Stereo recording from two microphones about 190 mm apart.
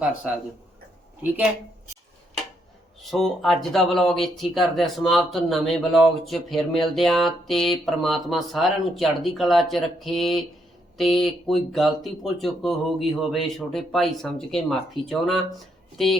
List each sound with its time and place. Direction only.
3.0 s speech: centre (ahead or behind)